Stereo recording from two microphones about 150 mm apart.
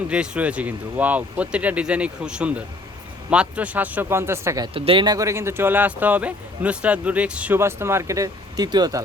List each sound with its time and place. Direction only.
0.1 s speech: 5° right (ahead or behind)
4.6 s speech: 35° right (ahead or behind)